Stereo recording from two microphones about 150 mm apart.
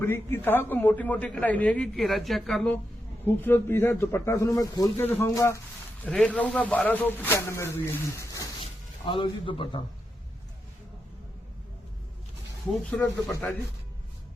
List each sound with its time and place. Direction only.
0.0 s a man's voice: 15° left (ahead or behind)
3.2 s a man's voice: 15° left (ahead or behind)
4.9 s a man's voice: 10° left (ahead or behind)
6.1 s a man's voice: 5° left (ahead or behind); by 8.4 s 20° left (ahead or behind)
8.6 s speech: 35° left (ahead or behind)
12.9 s a man's voice: 10° left (ahead or behind)